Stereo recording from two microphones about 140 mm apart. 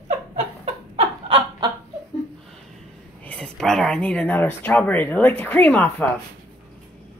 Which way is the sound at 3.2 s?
5° left (ahead or behind).